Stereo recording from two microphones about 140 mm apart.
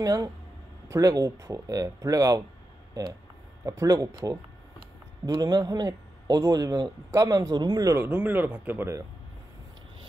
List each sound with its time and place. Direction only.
0.0 s a man's voice: 25° right (ahead or behind)
2.9 s a sound: 25° right (ahead or behind)
3.6 s a man's voice: 25° right (ahead or behind)
8.0 s speech: 10° right (ahead or behind)